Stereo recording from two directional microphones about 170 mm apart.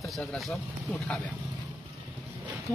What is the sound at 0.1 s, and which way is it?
Speech, 5° left (ahead or behind).